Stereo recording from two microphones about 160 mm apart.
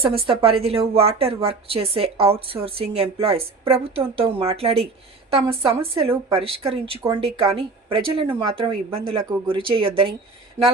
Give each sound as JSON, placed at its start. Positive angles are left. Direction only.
{"t": 0.0, "sound": "a woman's voice", "side_deg": -35}